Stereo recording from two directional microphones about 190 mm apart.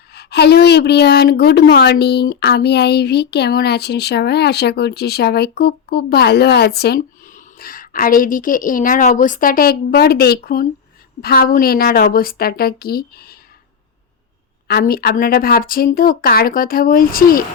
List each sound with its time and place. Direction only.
0.1 s a woman's voice: 60° left (ahead or behind)
14.7 s speech: 55° left (ahead or behind)